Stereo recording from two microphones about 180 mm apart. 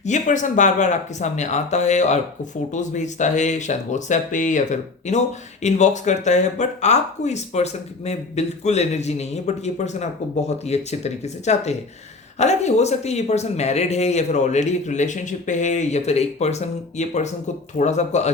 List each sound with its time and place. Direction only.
0.0 s speech: 45° left (ahead or behind)